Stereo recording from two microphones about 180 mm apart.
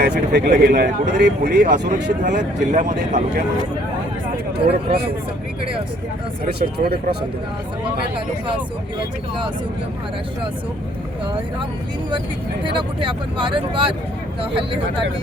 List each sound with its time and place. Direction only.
0.0 s speech: 65° right (ahead or behind); by 3.4 s 45° right (ahead or behind)
4.5 s speech: 60° right (ahead or behind)
6.4 s speech: 60° right (ahead or behind)
12.6 s speech: 30° right (ahead or behind)